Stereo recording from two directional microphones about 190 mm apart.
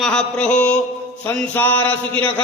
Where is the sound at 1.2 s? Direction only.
10° left (ahead or behind).